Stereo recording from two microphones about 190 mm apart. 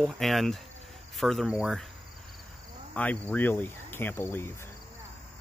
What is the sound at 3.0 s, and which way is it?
Speech, 10° left (ahead or behind).